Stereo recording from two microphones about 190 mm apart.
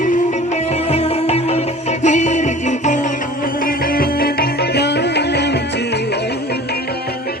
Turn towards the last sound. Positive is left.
turn(degrees=60)  # may be behind; listen again after turning